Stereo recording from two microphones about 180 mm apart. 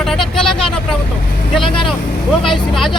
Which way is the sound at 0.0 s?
Centre (ahead or behind).